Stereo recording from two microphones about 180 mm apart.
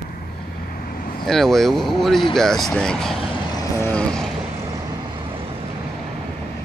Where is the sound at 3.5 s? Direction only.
20° left (ahead or behind).